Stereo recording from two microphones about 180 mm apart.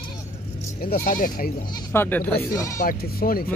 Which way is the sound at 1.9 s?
10° left (ahead or behind).